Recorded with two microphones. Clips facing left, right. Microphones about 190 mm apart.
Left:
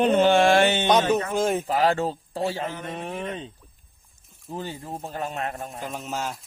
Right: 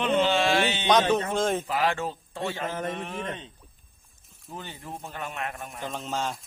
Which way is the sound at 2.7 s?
40° right (ahead or behind).